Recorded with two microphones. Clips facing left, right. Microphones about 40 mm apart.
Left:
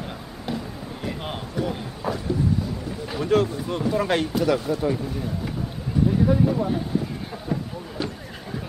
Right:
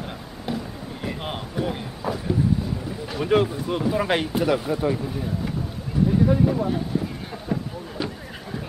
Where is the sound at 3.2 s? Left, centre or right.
Centre.